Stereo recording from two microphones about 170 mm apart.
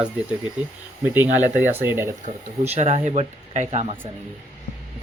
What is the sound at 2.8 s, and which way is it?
Speech, 40° right (ahead or behind).